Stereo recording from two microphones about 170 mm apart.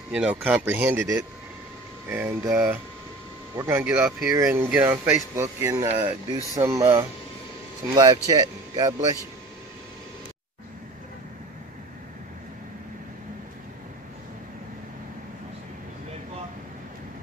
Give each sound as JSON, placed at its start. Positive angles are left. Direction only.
{"t": 0.1, "sound": "speech", "side_deg": -5}